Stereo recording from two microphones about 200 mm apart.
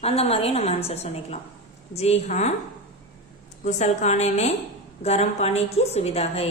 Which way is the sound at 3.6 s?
35° left (ahead or behind).